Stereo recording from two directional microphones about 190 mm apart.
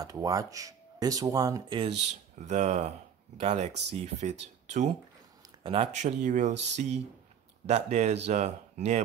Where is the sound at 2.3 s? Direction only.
40° right (ahead or behind).